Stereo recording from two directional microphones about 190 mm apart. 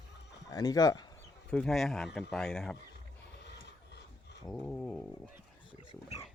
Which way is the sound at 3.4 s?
65° left (ahead or behind).